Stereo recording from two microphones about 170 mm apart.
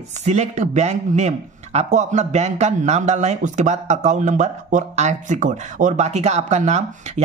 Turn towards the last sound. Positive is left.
turn(degrees=-45)  # may be behind; listen again after turning